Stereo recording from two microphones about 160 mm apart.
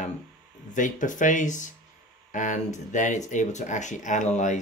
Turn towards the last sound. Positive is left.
turn(degrees=50)  # may be behind; listen again after turning